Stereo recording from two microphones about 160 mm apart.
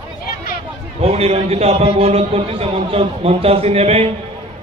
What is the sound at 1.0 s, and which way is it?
A man's voice, 40° right (ahead or behind).